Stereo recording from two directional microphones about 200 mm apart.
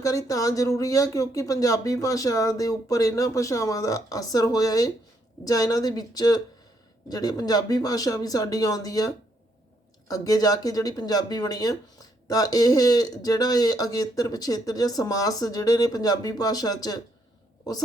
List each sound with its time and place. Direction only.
0.0 s speech: 15° left (ahead or behind)